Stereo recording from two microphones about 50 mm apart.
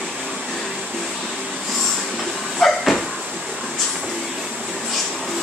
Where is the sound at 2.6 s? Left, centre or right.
Centre.